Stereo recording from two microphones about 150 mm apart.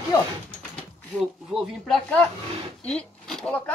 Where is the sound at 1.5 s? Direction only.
Centre (ahead or behind).